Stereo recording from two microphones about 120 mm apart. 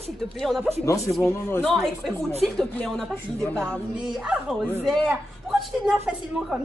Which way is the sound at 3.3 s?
10° left (ahead or behind).